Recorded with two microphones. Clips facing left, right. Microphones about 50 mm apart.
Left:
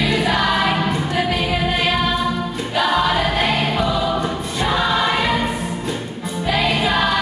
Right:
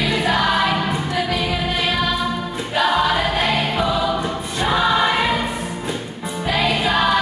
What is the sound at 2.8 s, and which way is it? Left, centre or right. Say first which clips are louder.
Choir: even; centre.